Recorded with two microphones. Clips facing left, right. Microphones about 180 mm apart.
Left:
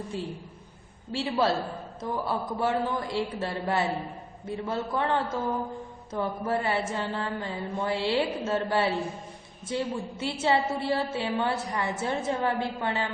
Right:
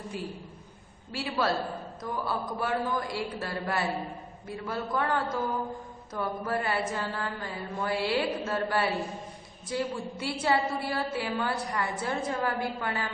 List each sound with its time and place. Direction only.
1.1 s a woman's voice: 25° left (ahead or behind)